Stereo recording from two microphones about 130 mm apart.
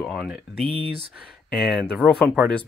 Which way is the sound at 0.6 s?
45° right (ahead or behind).